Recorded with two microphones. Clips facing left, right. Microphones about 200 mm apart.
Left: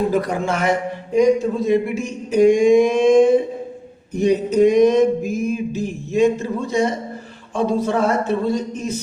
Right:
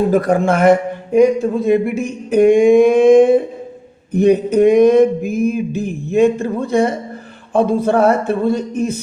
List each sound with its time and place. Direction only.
0.1 s speech: 50° right (ahead or behind)